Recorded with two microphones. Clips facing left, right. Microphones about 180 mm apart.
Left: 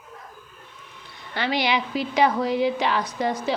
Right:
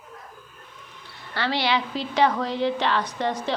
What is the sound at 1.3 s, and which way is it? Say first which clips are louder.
Speech: left 1 dB; 15° left (ahead or behind).